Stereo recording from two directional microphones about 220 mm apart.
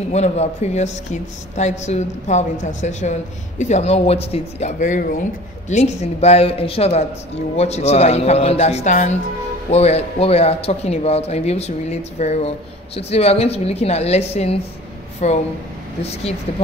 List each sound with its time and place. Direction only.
0.1 s a man's voice: 30° left (ahead or behind)